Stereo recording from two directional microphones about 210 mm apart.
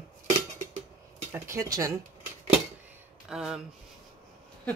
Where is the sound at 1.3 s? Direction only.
15° right (ahead or behind).